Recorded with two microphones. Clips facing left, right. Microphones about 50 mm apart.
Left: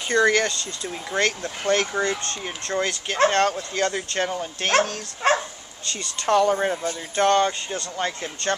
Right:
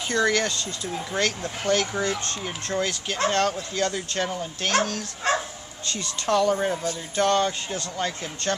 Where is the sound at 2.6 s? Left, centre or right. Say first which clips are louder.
Left 2 dB; left.